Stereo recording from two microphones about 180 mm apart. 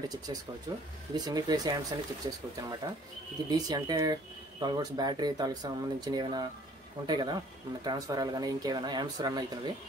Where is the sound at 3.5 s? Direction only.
20° right (ahead or behind).